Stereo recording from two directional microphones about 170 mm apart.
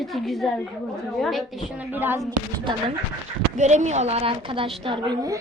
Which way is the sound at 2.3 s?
25° right (ahead or behind).